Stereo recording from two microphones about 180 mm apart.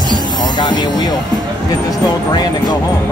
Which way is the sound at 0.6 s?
25° left (ahead or behind).